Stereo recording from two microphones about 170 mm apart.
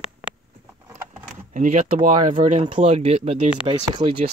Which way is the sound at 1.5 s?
40° right (ahead or behind).